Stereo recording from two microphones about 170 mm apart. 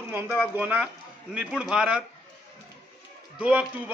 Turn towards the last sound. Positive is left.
turn(degrees=-5)  # may be behind; listen again after turning